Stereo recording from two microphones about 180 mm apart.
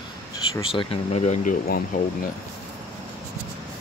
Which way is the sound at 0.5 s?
30° left (ahead or behind).